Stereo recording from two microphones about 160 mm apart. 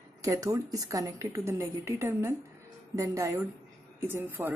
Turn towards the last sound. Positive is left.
turn(degrees=-15)  # may be behind; listen again after turning